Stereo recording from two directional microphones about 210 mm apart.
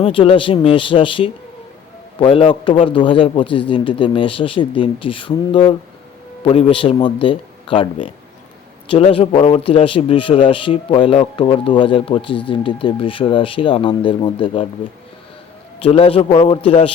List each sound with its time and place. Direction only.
0.0 s speech: 25° left (ahead or behind)
15.8 s speech: 30° left (ahead or behind)